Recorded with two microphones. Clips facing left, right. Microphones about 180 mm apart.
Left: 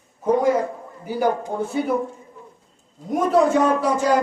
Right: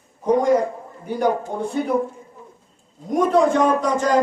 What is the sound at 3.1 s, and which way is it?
A man's voice, 5° left (ahead or behind).